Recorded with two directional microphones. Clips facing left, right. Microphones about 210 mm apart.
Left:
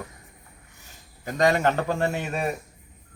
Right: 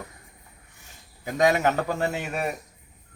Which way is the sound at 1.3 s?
5° right (ahead or behind).